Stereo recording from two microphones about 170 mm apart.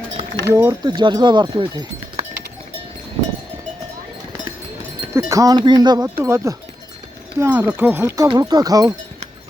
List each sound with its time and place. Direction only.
0.4 s speech: 15° right (ahead or behind)
0.9 s speech: 25° right (ahead or behind)
5.1 s speech: 20° right (ahead or behind)